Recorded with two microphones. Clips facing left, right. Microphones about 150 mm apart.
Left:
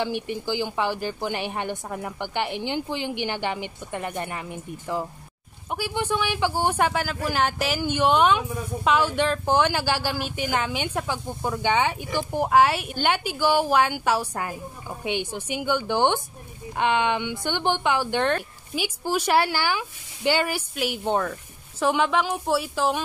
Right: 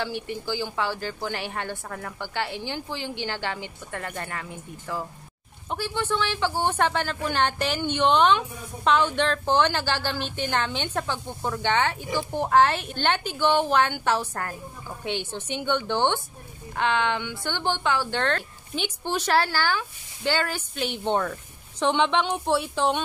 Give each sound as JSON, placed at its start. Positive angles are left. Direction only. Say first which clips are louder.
{"t": 0.0, "sound": "speech", "louder": "left 3 dB", "side_deg": 15}